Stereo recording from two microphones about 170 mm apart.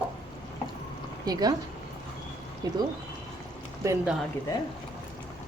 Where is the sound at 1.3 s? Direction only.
25° right (ahead or behind).